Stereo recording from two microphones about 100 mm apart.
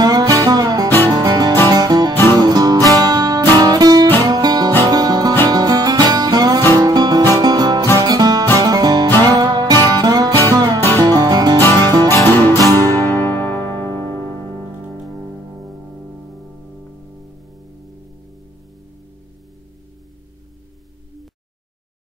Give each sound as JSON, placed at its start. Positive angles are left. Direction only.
{"t": 0.0, "sound": "music", "side_deg": -40}
{"t": 0.8, "sound": "music", "side_deg": 20}
{"t": 1.1, "sound": "music", "side_deg": -40}
{"t": 3.6, "sound": "guitar", "side_deg": -40}
{"t": 4.8, "sound": "music", "side_deg": -40}
{"t": 12.1, "sound": "music", "side_deg": 20}